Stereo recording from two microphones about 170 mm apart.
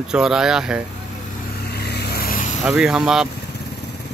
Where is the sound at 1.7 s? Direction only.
70° left (ahead or behind); by 2.5 s 55° left (ahead or behind).